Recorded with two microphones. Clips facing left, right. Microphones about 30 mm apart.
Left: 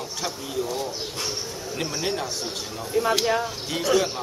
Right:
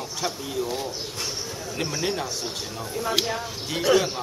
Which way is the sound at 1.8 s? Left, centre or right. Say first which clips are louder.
Even; centre.